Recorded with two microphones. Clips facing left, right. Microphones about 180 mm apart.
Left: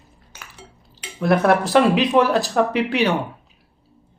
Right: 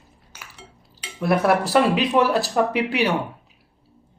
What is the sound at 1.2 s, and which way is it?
Speech, 5° right (ahead or behind).